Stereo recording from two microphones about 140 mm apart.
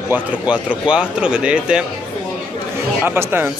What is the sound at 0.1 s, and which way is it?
Speech, 10° right (ahead or behind).